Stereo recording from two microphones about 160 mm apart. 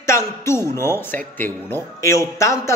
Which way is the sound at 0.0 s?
15° left (ahead or behind).